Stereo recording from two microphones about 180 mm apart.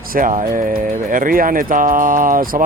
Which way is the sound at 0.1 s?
50° right (ahead or behind).